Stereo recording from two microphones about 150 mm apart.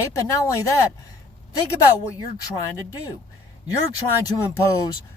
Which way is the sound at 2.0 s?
20° left (ahead or behind).